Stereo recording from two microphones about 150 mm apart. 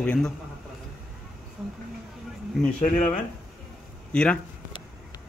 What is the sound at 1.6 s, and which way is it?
Speech, 5° right (ahead or behind).